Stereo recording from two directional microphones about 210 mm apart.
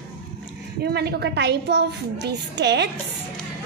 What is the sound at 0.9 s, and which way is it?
A woman's voice, 50° right (ahead or behind).